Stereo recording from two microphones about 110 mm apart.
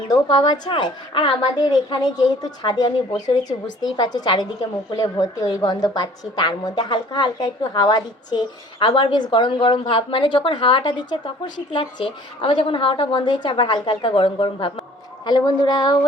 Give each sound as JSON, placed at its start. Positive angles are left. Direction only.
{"t": 0.1, "sound": "a woman's voice", "side_deg": 40}
{"t": 0.7, "sound": "a woman's voice", "side_deg": 50}
{"t": 15.3, "sound": "a woman's voice", "side_deg": 40}